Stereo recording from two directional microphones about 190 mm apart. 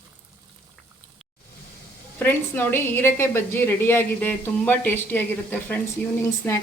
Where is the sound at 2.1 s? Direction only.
10° left (ahead or behind).